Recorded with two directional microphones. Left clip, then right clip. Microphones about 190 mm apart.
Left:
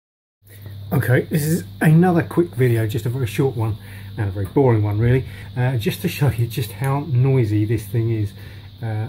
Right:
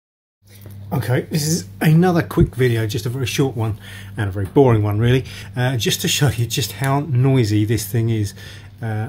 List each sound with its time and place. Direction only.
0.8 s speech: 15° left (ahead or behind); by 3.3 s 10° right (ahead or behind)
4.2 s speech: 30° right (ahead or behind)